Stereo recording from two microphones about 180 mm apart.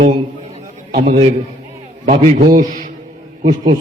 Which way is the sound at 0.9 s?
45° right (ahead or behind).